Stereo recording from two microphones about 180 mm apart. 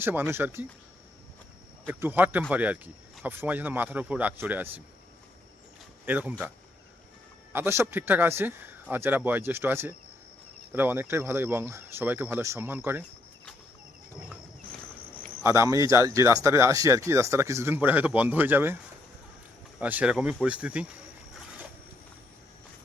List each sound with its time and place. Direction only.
0.0 s speech: 10° right (ahead or behind)
1.9 s speech: 10° right (ahead or behind)
6.1 s speech: 10° right (ahead or behind)
7.5 s speech: 15° right (ahead or behind)
15.4 s speech: 15° right (ahead or behind)
19.8 s speech: 10° right (ahead or behind)